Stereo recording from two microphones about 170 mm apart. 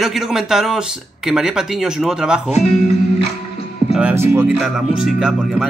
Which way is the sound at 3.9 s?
10° right (ahead or behind).